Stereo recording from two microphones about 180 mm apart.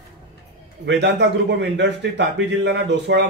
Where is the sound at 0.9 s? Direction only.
70° right (ahead or behind).